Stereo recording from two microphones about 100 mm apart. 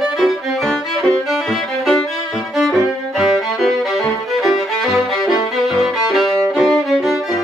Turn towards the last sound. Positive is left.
turn(degrees=0)  # may be behind; listen again after turning